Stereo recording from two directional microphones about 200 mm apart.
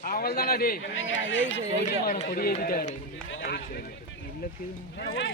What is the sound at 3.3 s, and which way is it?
Run, 65° left (ahead or behind).